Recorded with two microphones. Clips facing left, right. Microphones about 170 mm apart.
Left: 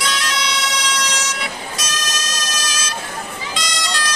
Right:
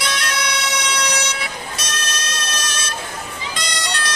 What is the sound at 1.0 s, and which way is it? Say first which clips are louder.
Vehicle: right 2 dB; 65° right (ahead or behind).